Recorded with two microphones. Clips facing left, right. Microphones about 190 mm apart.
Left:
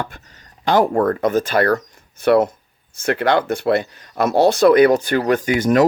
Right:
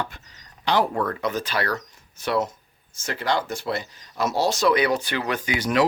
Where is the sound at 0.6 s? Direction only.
50° left (ahead or behind).